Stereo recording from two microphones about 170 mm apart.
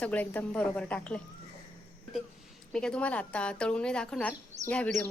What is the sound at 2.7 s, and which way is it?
A woman's voice, 5° left (ahead or behind).